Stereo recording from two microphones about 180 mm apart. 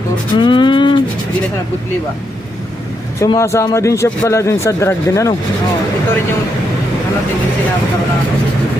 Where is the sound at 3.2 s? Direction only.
15° left (ahead or behind).